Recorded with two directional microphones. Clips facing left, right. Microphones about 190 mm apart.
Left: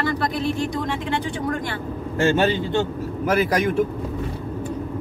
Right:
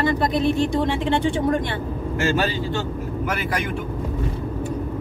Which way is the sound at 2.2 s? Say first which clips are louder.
Left 4 dB; 25° left (ahead or behind).